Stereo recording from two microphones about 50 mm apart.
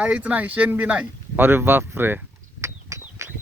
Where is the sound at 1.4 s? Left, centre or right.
Right.